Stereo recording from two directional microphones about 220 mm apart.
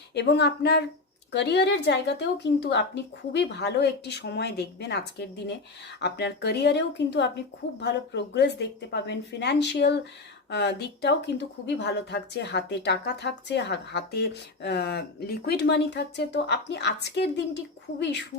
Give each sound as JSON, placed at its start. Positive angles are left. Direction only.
{"t": 0.1, "sound": "speech", "side_deg": 50}